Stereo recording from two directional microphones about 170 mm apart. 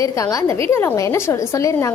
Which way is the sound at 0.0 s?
20° left (ahead or behind).